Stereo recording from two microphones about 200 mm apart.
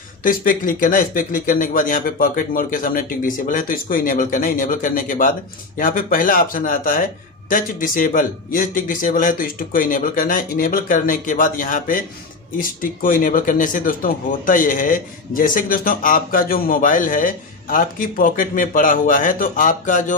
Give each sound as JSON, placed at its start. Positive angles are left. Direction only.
{"t": 0.2, "sound": "speech", "side_deg": 45}